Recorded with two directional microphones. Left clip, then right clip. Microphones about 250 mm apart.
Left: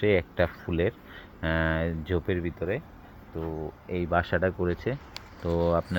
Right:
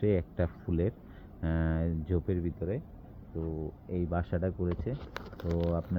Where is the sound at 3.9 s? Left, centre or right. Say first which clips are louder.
Left 9 dB; centre; by 5.8 s left.